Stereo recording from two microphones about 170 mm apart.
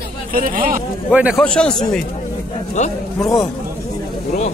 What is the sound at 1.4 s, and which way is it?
Speech, 5° left (ahead or behind).